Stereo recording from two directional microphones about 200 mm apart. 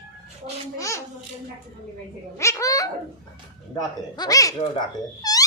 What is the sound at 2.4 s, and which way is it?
Speech, 15° left (ahead or behind).